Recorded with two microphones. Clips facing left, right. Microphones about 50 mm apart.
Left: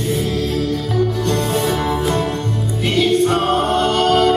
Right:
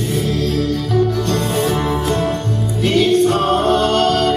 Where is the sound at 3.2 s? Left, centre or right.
Centre.